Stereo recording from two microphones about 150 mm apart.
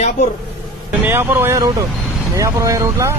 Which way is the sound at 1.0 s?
15° right (ahead or behind).